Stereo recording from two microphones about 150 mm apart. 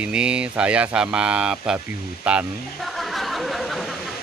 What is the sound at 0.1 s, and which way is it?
Speech, 5° right (ahead or behind).